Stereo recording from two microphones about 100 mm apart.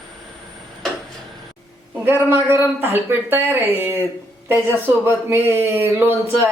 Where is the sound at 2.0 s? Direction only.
20° right (ahead or behind).